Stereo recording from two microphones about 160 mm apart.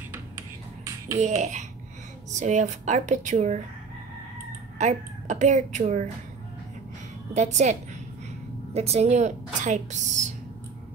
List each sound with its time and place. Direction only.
0.1 s music: 15° right (ahead or behind)
1.2 s a woman's voice: 45° right (ahead or behind)
4.7 s a woman's voice: 50° right (ahead or behind)
7.3 s a woman's voice: 45° right (ahead or behind)
8.7 s a woman's voice: 40° right (ahead or behind)